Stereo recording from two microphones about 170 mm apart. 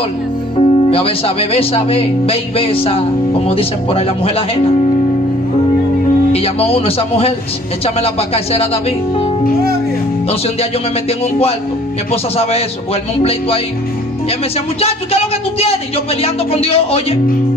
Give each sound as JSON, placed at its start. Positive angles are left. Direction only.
{"t": 0.6, "sound": "speech", "side_deg": 35}
{"t": 6.3, "sound": "speech", "side_deg": 35}
{"t": 12.1, "sound": "speech", "side_deg": 35}
{"t": 14.8, "sound": "speech", "side_deg": 35}